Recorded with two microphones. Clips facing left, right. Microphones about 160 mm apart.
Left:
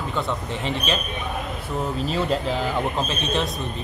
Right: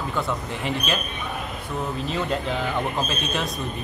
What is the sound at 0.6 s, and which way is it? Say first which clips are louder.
Speech: left 1 dB; 30° left (ahead or behind).